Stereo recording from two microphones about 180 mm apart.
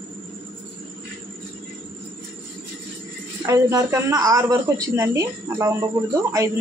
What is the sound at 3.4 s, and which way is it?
A woman's voice, 20° right (ahead or behind).